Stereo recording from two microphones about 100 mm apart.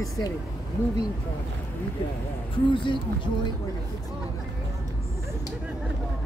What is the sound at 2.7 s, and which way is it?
Speech, 55° left (ahead or behind).